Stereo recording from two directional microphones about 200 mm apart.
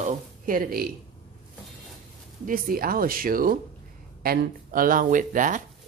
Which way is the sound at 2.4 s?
45° right (ahead or behind).